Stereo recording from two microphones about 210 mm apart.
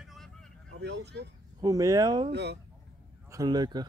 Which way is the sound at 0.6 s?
55° right (ahead or behind).